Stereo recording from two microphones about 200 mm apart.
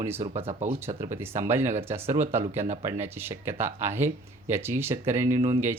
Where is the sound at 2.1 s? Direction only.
35° right (ahead or behind).